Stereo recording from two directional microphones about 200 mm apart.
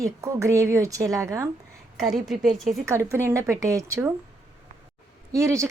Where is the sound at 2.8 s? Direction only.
15° right (ahead or behind).